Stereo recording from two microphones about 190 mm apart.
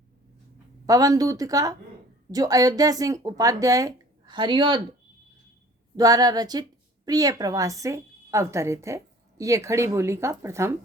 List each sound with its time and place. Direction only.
0.9 s speech: 20° right (ahead or behind)
6.0 s a woman's voice: 20° right (ahead or behind)